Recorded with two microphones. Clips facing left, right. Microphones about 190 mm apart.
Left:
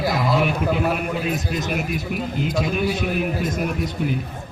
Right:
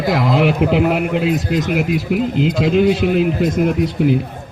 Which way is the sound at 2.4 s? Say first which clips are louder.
Right 8 dB; 85° right.